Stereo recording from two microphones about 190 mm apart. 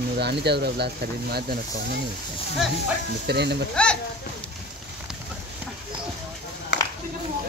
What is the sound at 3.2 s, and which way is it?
Speech, 60° right (ahead or behind).